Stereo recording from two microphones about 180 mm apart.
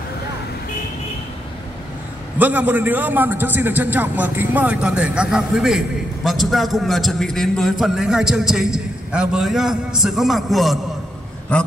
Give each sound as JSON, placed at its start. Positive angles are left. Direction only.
{"t": 2.3, "sound": "a man's voice", "side_deg": -10}